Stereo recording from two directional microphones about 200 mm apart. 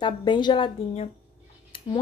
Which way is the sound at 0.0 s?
25° left (ahead or behind).